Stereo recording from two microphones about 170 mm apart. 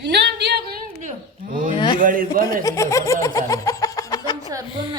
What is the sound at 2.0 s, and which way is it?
Speech, 55° right (ahead or behind).